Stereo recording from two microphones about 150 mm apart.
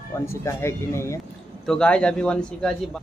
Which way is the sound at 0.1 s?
20° left (ahead or behind).